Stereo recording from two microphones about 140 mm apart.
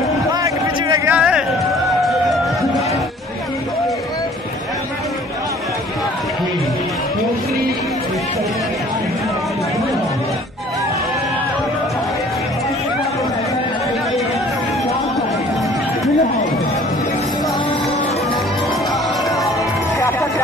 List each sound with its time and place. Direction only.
0.3 s a sound: 25° right (ahead or behind)
1.0 s speech: 10° right (ahead or behind)
20.0 s music: 20° left (ahead or behind)